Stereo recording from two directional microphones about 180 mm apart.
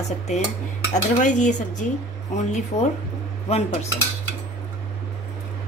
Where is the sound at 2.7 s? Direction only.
35° left (ahead or behind).